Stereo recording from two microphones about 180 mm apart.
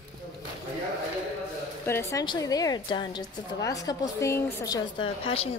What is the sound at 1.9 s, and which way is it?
Speech, 15° left (ahead or behind).